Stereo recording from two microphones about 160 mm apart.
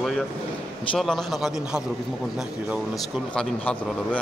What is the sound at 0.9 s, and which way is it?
Speech, centre (ahead or behind).